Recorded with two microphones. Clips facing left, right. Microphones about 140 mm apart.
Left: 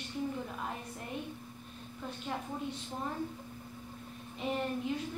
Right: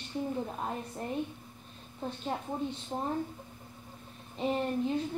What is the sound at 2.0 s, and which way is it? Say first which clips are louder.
Speech: right 4 dB; 30° right (ahead or behind).